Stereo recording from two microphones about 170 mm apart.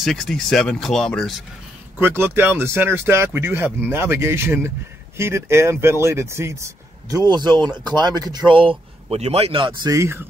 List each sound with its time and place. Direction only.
0.0 s speech: centre (ahead or behind)
2.0 s a man's voice: 15° right (ahead or behind)